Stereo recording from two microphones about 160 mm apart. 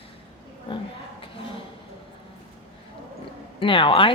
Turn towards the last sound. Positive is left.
turn(degrees=30)  # may be behind; listen again after turning